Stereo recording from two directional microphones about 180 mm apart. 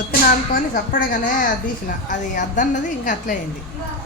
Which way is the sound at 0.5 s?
50° left (ahead or behind).